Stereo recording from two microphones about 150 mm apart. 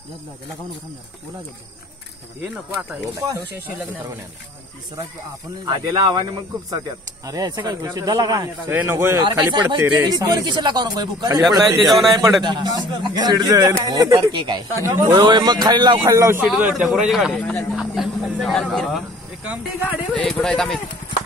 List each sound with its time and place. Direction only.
5.7 s speech: 25° right (ahead or behind)
8.6 s a man's voice: 15° right (ahead or behind)
9.2 s speech: 30° right (ahead or behind)
11.6 s speech: centre (ahead or behind)
12.4 s a man's voice: 30° right (ahead or behind)
15.2 s speech: 30° right (ahead or behind)
16.4 s speech: 5° right (ahead or behind)